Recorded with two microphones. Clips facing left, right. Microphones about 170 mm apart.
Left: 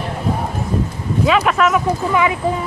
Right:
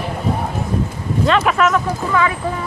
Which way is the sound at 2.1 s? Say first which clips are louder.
Even; 20° left (ahead or behind).